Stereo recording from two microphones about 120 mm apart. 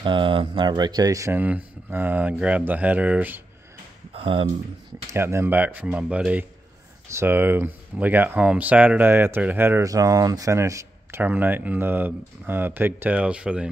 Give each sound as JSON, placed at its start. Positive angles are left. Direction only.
{"t": 0.0, "sound": "speech", "side_deg": -45}
{"t": 1.4, "sound": "speech", "side_deg": -15}
{"t": 4.1, "sound": "a sound", "side_deg": -50}
{"t": 5.1, "sound": "speech", "side_deg": -20}